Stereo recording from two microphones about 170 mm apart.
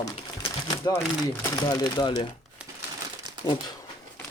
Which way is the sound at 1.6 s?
25° left (ahead or behind).